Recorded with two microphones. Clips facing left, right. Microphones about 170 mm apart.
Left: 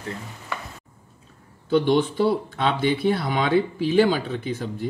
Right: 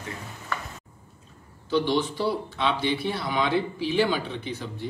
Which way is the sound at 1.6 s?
50° left (ahead or behind).